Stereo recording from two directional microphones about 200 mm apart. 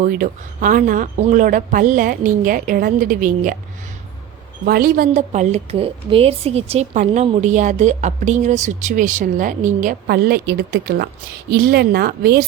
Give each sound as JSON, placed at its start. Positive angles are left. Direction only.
{"t": 0.0, "sound": "speech", "side_deg": -40}
{"t": 4.6, "sound": "speech", "side_deg": -50}